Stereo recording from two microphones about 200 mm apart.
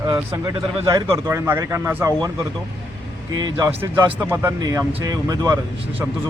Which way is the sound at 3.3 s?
20° right (ahead or behind).